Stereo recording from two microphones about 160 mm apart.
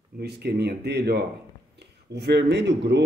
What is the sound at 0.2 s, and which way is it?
Speech, 90° right.